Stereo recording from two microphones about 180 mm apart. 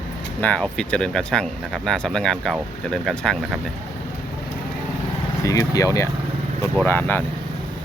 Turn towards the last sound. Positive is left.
turn(degrees=10)  # may be behind; listen again after turning